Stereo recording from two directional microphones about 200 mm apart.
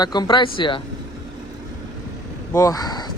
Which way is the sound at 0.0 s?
20° left (ahead or behind).